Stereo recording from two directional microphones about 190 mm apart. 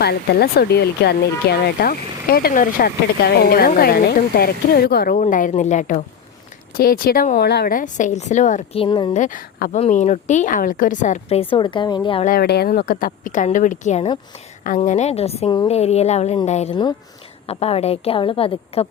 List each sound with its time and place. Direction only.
0.0 s speech: 55° left (ahead or behind); by 6.0 s 40° left (ahead or behind)
6.7 s a woman's voice: 50° left (ahead or behind); by 9.1 s 25° left (ahead or behind)
9.1 s speech: 45° left (ahead or behind)
9.7 s a woman's voice: 40° left (ahead or behind)
12.2 s a woman's voice: 50° left (ahead or behind); by 18.9 s 30° left (ahead or behind)